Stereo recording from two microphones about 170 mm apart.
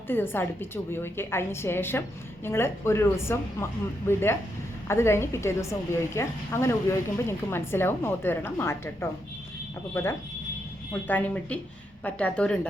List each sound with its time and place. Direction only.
0.1 s a woman's voice: 10° left (ahead or behind)